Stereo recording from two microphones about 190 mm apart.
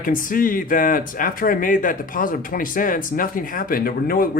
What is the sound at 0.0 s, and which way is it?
Speech, 45° left (ahead or behind).